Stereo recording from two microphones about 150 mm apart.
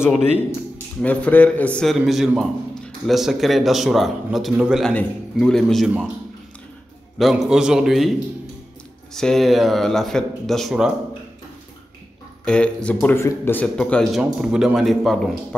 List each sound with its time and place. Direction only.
1.0 s a man's voice: 10° left (ahead or behind)
7.2 s a man's voice: centre (ahead or behind)
9.1 s a man's voice: 5° left (ahead or behind)
12.4 s speech: 5° left (ahead or behind)
14.4 s a man's voice: 5° right (ahead or behind)